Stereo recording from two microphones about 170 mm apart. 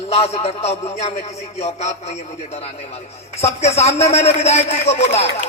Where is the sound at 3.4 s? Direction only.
40° left (ahead or behind).